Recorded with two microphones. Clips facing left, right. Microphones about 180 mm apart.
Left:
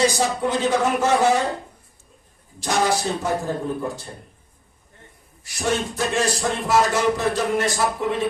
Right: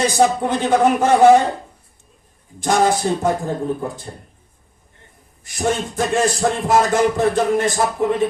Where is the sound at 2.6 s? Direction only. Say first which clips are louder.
Right 5 dB; 50° right (ahead or behind).